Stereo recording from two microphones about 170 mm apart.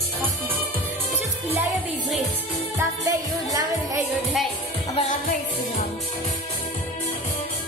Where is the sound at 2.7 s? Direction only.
20° right (ahead or behind).